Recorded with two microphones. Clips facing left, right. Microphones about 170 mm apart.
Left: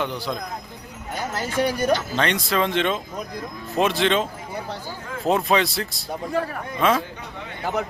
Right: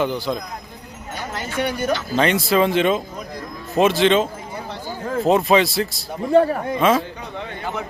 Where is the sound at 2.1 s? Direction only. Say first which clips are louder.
Right 5 dB; 5° right (ahead or behind).